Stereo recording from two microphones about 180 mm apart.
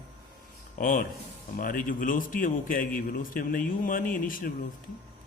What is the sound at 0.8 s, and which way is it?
A man's voice, 50° left (ahead or behind).